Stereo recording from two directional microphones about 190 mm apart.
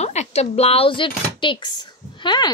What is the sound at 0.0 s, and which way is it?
A woman's voice, 35° left (ahead or behind).